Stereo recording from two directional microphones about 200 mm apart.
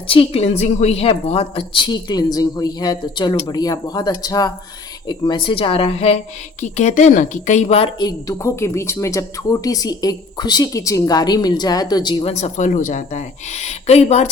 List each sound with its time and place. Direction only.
0.1 s a woman's voice: 30° left (ahead or behind)